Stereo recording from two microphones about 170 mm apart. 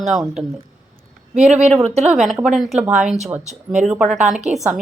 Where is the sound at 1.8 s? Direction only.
40° right (ahead or behind).